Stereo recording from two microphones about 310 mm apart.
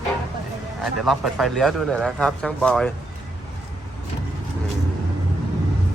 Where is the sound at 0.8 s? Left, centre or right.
Centre.